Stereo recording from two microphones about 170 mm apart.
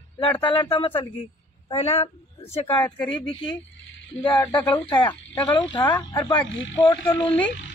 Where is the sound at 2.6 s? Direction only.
10° left (ahead or behind).